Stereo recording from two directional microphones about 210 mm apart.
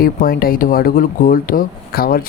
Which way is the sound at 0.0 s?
45° left (ahead or behind).